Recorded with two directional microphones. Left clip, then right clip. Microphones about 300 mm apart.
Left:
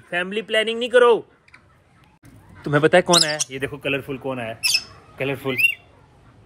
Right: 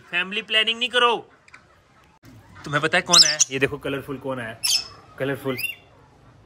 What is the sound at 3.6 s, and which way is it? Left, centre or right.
Speech, right.